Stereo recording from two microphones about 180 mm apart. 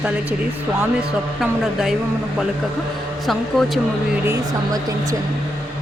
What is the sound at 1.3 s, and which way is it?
Speech, centre (ahead or behind).